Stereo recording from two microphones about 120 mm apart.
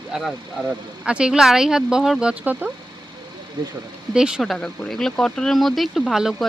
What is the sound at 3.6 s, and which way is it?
Speech, 40° right (ahead or behind).